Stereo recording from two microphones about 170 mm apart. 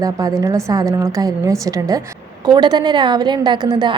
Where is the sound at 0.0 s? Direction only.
20° right (ahead or behind).